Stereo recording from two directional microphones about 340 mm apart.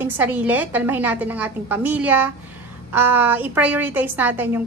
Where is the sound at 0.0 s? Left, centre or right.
Centre.